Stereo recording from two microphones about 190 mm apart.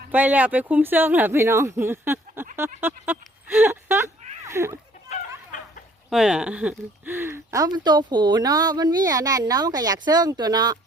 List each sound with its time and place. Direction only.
0.1 s speech: 10° right (ahead or behind)
2.8 s a sound: 10° right (ahead or behind)
5.0 s chicken: 45° left (ahead or behind)
6.1 s speech: centre (ahead or behind); by 10.8 s 20° right (ahead or behind)